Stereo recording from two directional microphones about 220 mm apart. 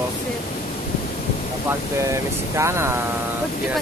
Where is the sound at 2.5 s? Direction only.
10° right (ahead or behind).